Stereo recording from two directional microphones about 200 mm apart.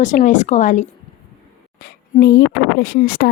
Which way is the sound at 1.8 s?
50° left (ahead or behind).